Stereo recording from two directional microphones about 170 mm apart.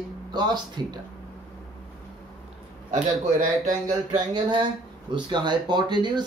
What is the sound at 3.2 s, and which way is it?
Speech, 45° right (ahead or behind).